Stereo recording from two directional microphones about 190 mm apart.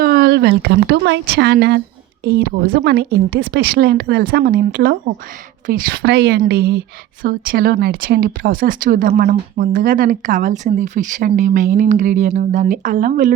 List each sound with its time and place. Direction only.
0.0 s a woman's voice: 55° right (ahead or behind)